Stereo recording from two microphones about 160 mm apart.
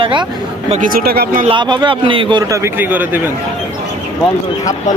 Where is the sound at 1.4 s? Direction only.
30° right (ahead or behind); by 3.3 s 10° right (ahead or behind).